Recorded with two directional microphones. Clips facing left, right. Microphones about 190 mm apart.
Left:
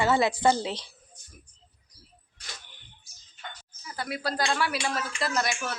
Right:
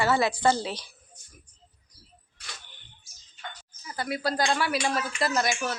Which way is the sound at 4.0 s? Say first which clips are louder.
Right 2 dB; centre (ahead or behind).